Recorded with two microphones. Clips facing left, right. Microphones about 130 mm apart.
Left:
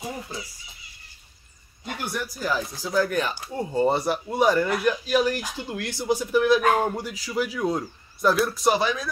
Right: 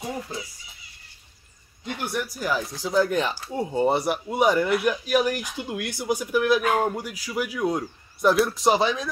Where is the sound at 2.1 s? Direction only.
15° right (ahead or behind).